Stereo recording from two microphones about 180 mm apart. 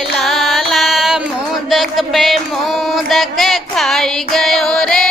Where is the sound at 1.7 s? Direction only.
Centre (ahead or behind).